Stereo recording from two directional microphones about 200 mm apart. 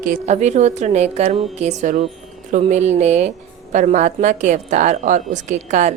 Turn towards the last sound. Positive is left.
turn(degrees=-35)  # may be behind; listen again after turning